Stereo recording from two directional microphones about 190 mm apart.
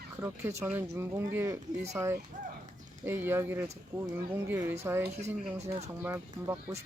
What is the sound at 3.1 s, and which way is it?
Speech, 10° right (ahead or behind).